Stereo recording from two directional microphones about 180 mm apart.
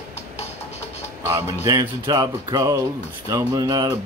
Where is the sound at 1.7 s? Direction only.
20° right (ahead or behind).